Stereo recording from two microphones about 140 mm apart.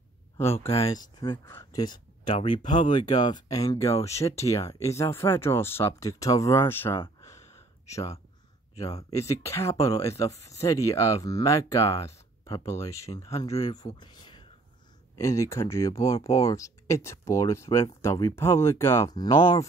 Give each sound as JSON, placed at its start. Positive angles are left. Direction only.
{"t": 0.7, "sound": "speech", "side_deg": 45}
{"t": 0.9, "sound": "speech", "side_deg": 30}
{"t": 7.2, "sound": "a sound", "side_deg": 20}
{"t": 9.1, "sound": "speech", "side_deg": 20}
{"t": 13.9, "sound": "speech", "side_deg": 35}
{"t": 15.1, "sound": "speech", "side_deg": 20}
{"t": 19.1, "sound": "speech", "side_deg": 30}